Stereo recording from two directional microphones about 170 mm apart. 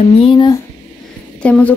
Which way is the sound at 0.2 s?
25° left (ahead or behind).